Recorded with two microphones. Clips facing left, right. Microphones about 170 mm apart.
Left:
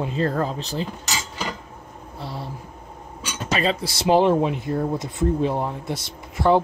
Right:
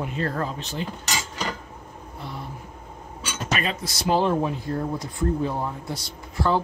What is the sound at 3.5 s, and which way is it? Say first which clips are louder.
Speech: left 5 dB; 30° left (ahead or behind).